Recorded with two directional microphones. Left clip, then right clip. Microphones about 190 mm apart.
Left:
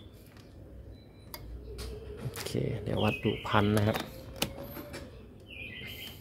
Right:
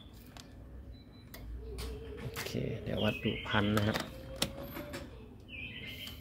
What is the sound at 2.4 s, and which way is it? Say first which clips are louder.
Speech: left 6 dB; 20° left (ahead or behind).